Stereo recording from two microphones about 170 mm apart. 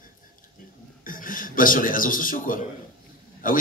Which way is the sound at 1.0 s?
55° left (ahead or behind).